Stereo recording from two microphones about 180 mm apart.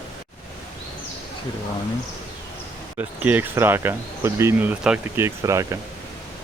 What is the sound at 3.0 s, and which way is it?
Speech, 10° right (ahead or behind).